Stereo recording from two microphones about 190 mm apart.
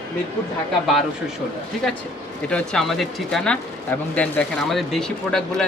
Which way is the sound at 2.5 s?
5° left (ahead or behind).